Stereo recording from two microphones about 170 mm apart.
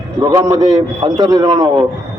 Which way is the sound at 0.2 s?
20° right (ahead or behind).